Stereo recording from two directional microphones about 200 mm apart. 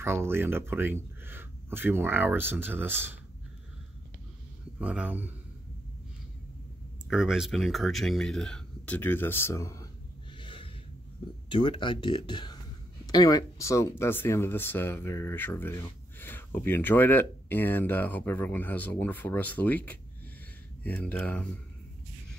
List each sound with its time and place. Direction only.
0.0 s speech: 10° right (ahead or behind)
4.7 s speech: 5° right (ahead or behind)
7.1 s speech: centre (ahead or behind); by 9.8 s 15° left (ahead or behind)
10.4 s snort: 25° left (ahead or behind)
11.4 s speech: 25° left (ahead or behind); by 21.5 s 5° left (ahead or behind)